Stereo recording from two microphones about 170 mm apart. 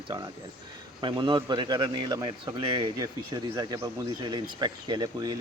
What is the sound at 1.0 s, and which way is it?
Speech, 30° right (ahead or behind).